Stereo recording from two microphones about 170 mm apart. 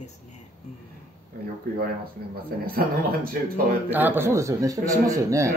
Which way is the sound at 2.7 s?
60° right (ahead or behind).